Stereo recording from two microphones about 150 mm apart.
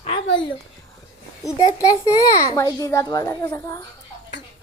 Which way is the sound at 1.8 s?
20° left (ahead or behind).